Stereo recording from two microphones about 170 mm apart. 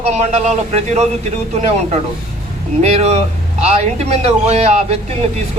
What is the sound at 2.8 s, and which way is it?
A man's voice, 40° right (ahead or behind).